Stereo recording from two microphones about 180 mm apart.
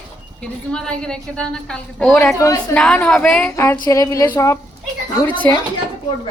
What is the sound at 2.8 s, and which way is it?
A woman's voice, 5° left (ahead or behind).